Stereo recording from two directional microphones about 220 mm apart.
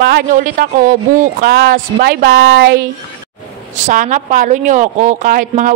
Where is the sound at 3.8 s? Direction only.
35° right (ahead or behind).